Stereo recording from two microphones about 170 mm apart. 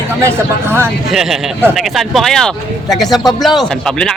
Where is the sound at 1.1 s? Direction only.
5° right (ahead or behind).